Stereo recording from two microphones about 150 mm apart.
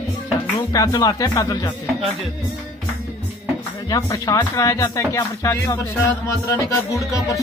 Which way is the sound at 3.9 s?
25° left (ahead or behind).